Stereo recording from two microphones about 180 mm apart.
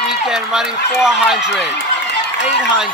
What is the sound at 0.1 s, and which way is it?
Speech, 5° right (ahead or behind).